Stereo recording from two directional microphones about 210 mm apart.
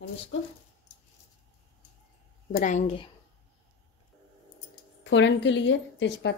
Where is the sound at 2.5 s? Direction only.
40° left (ahead or behind).